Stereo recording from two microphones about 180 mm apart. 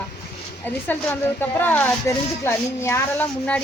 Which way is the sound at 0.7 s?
10° left (ahead or behind).